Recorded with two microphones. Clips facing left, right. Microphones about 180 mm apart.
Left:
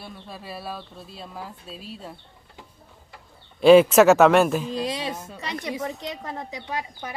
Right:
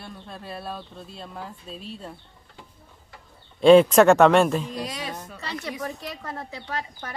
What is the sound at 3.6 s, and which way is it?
Speech, 5° left (ahead or behind).